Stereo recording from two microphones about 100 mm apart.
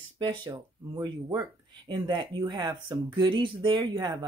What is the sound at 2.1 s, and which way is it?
Speech, 50° right (ahead or behind).